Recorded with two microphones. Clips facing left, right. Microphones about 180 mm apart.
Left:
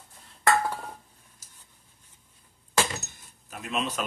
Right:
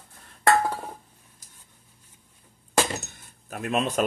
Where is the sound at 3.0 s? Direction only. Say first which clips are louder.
Right 3 dB; 55° right (ahead or behind).